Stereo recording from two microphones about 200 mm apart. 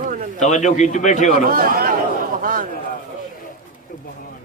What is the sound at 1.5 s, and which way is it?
A man's voice, 45° right (ahead or behind).